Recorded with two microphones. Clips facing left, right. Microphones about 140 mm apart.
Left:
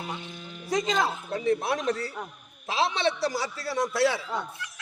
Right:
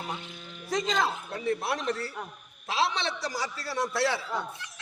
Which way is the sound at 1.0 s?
20° left (ahead or behind).